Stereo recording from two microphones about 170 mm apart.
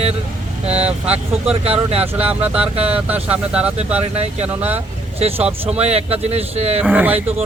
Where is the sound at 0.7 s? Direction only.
40° right (ahead or behind).